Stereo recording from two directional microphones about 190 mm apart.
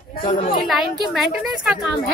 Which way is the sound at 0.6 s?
Centre (ahead or behind).